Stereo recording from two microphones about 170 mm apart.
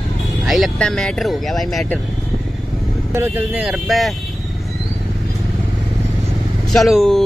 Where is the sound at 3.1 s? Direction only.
10° right (ahead or behind).